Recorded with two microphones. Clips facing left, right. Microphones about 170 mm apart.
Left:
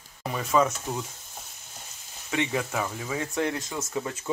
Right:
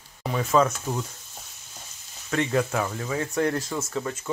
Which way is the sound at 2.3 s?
10° left (ahead or behind).